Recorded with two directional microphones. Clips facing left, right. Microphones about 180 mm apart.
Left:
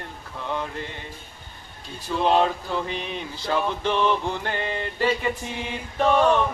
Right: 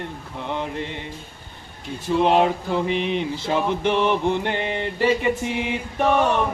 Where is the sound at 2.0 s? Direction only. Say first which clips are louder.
Right 3 dB; 20° right (ahead or behind).